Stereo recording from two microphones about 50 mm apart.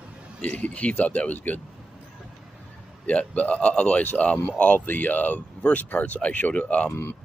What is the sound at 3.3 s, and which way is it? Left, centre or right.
Speech, left.